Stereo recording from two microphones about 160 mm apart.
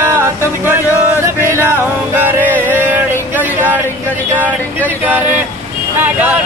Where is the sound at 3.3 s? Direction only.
10° right (ahead or behind).